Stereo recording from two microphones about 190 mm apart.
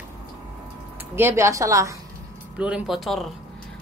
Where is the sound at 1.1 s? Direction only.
15° right (ahead or behind).